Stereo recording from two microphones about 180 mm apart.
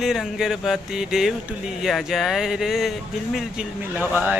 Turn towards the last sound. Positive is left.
turn(degrees=-10)  # may be behind; listen again after turning